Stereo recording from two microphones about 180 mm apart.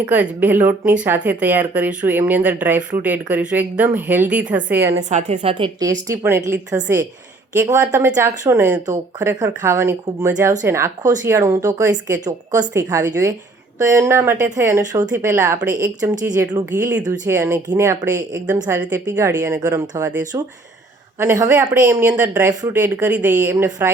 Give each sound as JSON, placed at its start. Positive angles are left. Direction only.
{"t": 0.1, "sound": "speech", "side_deg": -10}
{"t": 5.0, "sound": "a woman's voice", "side_deg": -40}
{"t": 16.7, "sound": "speech", "side_deg": -10}